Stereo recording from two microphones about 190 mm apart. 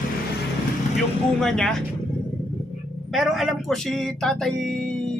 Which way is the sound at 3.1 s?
Centre (ahead or behind).